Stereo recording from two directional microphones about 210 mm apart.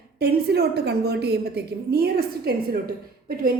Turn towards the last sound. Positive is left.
turn(degrees=-45)  # may be behind; listen again after turning